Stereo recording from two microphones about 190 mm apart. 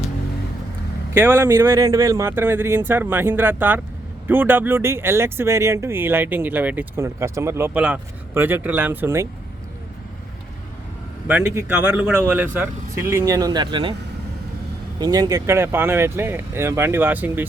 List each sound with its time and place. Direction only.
1.1 s speech: 10° right (ahead or behind)
11.3 s speech: 10° right (ahead or behind); by 13.9 s 25° right (ahead or behind)
14.9 s speech: 20° right (ahead or behind)